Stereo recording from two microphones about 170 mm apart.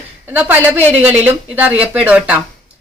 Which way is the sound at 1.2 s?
10° right (ahead or behind).